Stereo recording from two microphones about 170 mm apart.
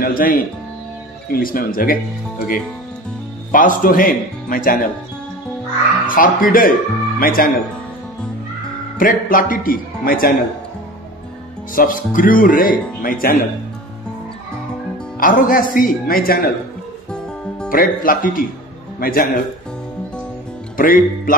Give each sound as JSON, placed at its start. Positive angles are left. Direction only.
{"t": 0.0, "sound": "a man's voice", "side_deg": 55}
{"t": 6.0, "sound": "a man's voice", "side_deg": 55}
{"t": 8.9, "sound": "a man's voice", "side_deg": 55}
{"t": 11.7, "sound": "a man's voice", "side_deg": 55}
{"t": 15.1, "sound": "a man's voice", "side_deg": 55}
{"t": 17.6, "sound": "a man's voice", "side_deg": 55}
{"t": 20.7, "sound": "speech", "side_deg": 55}